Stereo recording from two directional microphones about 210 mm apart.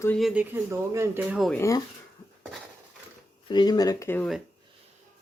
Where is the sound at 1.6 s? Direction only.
15° left (ahead or behind).